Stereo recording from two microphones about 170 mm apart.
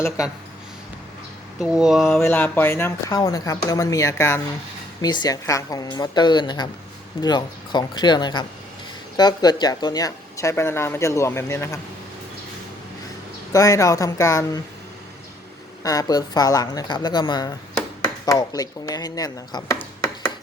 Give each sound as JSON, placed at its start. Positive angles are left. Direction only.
{"t": 1.6, "sound": "speech", "side_deg": -5}
{"t": 2.2, "sound": "a woman's voice", "side_deg": 10}
{"t": 13.5, "sound": "a woman's voice", "side_deg": 20}
{"t": 15.8, "sound": "a woman's voice", "side_deg": 20}